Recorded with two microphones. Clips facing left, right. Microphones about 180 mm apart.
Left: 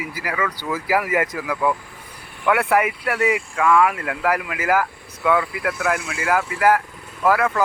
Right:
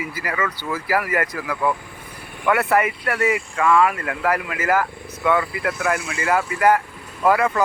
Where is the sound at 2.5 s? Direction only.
10° left (ahead or behind).